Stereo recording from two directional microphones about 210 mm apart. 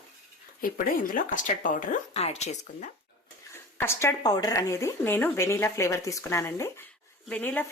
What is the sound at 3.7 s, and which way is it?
Speech, 10° left (ahead or behind).